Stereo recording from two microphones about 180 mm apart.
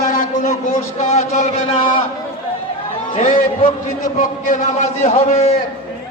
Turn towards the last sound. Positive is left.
turn(degrees=40)  # may be behind; listen again after turning